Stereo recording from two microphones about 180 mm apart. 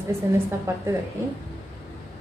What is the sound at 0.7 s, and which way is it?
Speech, 15° right (ahead or behind).